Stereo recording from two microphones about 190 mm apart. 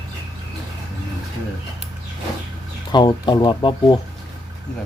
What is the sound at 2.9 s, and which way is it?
Speech, 25° left (ahead or behind).